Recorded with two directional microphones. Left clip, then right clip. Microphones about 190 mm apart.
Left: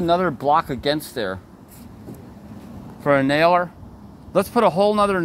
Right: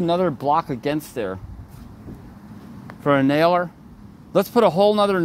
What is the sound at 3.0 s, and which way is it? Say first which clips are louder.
Speech: left 1 dB; 15° right (ahead or behind).